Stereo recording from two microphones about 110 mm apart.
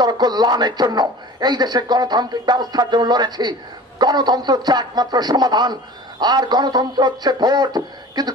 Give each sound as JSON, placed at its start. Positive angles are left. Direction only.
{"t": 0.0, "sound": "speech", "side_deg": -40}